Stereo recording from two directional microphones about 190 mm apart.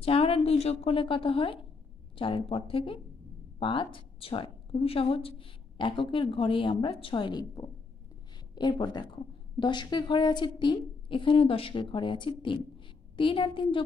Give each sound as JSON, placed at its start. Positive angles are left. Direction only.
{"t": 0.0, "sound": "speech", "side_deg": 30}